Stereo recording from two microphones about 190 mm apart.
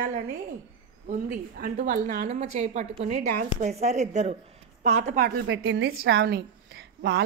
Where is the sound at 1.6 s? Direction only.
40° right (ahead or behind).